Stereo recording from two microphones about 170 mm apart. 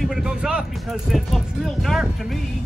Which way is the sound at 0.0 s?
5° right (ahead or behind).